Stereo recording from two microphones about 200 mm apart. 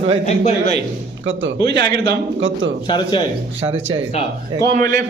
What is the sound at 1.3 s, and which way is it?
A man's voice, 65° right (ahead or behind).